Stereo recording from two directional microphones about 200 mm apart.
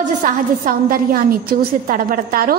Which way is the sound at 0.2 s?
45° right (ahead or behind).